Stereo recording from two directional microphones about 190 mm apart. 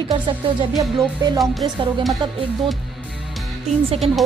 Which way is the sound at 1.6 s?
25° right (ahead or behind).